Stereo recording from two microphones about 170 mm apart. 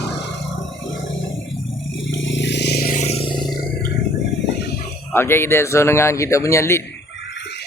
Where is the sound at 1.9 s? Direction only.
90° left; by 3.0 s 65° left (ahead or behind).